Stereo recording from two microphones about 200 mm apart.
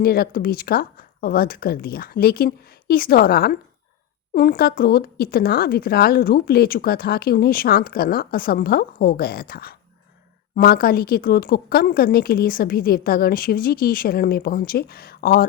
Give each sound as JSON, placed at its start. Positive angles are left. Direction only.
{"t": 0.0, "sound": "speech", "side_deg": 50}